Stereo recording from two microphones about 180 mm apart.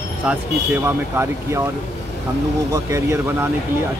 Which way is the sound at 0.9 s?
15° right (ahead or behind).